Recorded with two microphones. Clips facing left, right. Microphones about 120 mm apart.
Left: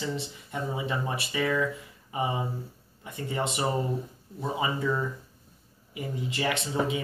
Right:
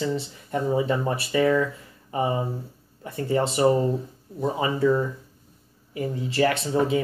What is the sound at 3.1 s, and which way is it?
Speech, 40° right (ahead or behind).